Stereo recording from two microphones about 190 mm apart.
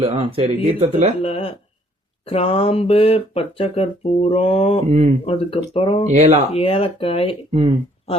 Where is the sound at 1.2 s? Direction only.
30° left (ahead or behind).